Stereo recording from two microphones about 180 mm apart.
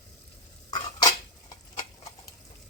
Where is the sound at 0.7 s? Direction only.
20° left (ahead or behind).